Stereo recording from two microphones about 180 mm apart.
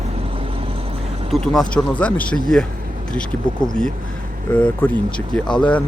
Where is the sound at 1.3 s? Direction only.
5° left (ahead or behind).